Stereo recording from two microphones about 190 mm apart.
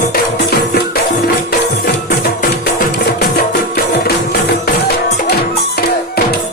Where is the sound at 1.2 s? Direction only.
55° left (ahead or behind).